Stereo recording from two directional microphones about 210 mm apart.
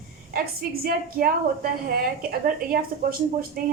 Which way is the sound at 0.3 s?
45° right (ahead or behind).